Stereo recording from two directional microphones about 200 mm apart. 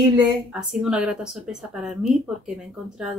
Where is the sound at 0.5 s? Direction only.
Centre (ahead or behind).